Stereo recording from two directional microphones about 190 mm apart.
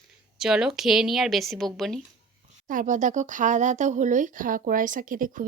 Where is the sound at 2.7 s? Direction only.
40° right (ahead or behind).